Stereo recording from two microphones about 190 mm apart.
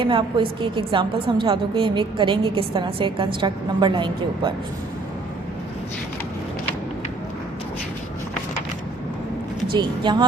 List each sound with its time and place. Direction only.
0.0 s a woman's voice: 25° right (ahead or behind)
9.7 s a woman's voice: 25° right (ahead or behind)